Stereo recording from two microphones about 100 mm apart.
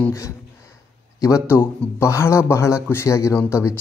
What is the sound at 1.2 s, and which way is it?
Speech, 30° left (ahead or behind).